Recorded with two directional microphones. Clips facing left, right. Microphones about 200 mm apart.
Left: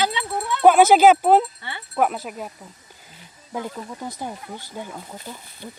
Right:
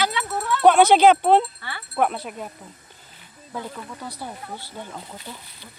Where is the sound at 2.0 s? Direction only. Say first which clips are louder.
Left 1 dB; 5° left (ahead or behind).